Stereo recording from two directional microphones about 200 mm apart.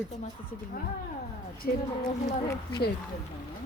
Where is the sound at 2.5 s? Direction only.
20° left (ahead or behind).